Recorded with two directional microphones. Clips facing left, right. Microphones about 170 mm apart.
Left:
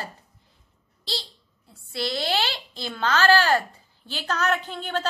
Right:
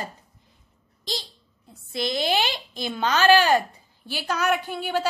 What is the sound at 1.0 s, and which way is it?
A child's voice, 15° right (ahead or behind).